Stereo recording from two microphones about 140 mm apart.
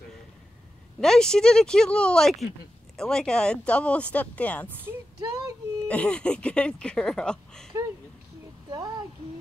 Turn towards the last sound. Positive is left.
turn(degrees=5)  # may be behind; listen again after turning